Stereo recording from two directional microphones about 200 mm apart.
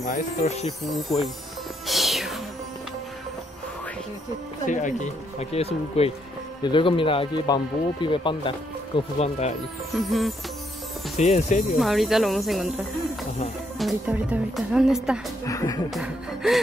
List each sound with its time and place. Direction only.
0.1 s speech: 35° left (ahead or behind)
1.9 s music: centre (ahead or behind)
4.6 s speech: 40° left (ahead or behind)
11.1 s speech: 35° left (ahead or behind)
11.8 s speech: centre (ahead or behind)
15.4 s speech: 20° left (ahead or behind)
15.9 s speech: centre (ahead or behind)